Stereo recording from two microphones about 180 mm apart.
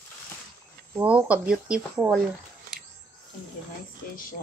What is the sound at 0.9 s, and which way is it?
Speech, 10° right (ahead or behind).